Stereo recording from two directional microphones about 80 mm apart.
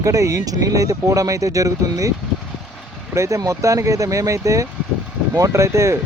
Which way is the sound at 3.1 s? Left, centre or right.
Right.